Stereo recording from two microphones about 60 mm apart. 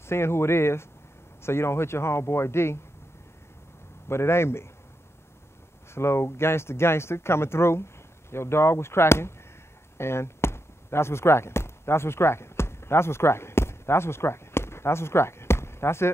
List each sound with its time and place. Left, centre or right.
0.0 s speech: left
4.1 s speech: left
5.9 s speech: left
9.9 s chop: left